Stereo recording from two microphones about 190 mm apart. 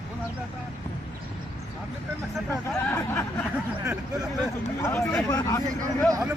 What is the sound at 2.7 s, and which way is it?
Speech, 10° left (ahead or behind).